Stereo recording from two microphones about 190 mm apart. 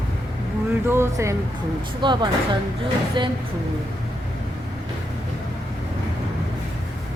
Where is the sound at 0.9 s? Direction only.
15° right (ahead or behind).